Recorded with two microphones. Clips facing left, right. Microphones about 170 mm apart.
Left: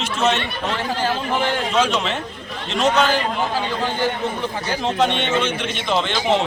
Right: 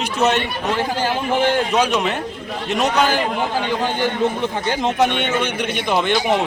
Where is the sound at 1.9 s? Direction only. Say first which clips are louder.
Right 2 dB; 60° right (ahead or behind).